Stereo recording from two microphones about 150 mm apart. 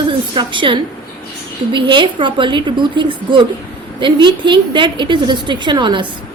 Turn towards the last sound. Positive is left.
turn(degrees=-30)  # may be behind; listen again after turning